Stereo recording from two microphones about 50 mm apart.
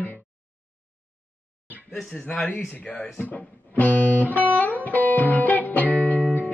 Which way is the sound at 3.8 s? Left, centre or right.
Left.